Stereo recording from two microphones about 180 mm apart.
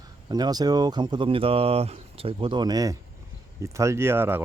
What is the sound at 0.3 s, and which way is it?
Speech, 20° right (ahead or behind).